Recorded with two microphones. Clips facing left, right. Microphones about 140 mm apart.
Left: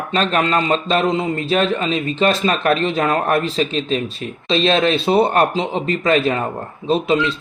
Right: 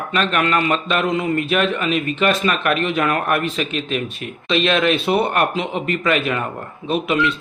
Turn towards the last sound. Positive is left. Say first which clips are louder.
# left 2 dB
turn(degrees=30)  # may be behind; listen again after turning